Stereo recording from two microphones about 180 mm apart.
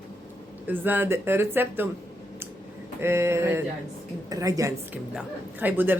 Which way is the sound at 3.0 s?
15° right (ahead or behind).